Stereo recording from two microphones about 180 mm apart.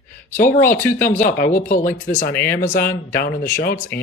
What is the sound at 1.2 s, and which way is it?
Speech, 45° left (ahead or behind).